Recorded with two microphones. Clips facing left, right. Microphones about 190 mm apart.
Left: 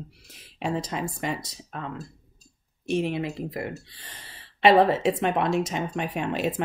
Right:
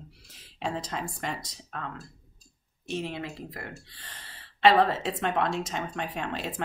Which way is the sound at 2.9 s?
15° left (ahead or behind).